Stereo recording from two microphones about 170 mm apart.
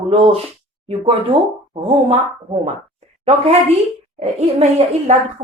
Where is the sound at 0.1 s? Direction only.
35° right (ahead or behind).